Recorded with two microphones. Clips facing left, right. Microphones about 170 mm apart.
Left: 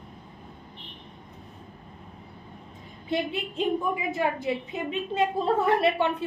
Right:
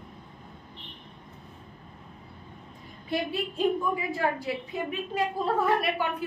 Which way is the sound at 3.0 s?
20° left (ahead or behind).